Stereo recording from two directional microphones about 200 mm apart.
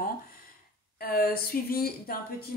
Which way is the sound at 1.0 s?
50° left (ahead or behind).